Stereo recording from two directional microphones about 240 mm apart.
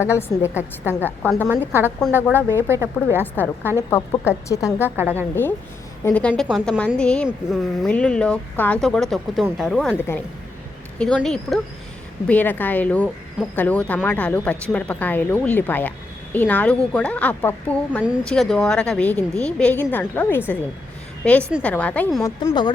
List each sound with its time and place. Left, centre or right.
0.0 s speech: centre
1.5 s a woman's voice: centre
2.0 s a woman's voice: centre
2.5 s a woman's voice: centre
3.2 s speech: centre
4.9 s a woman's voice: centre
5.3 s a woman's voice: centre
22.4 s speech: centre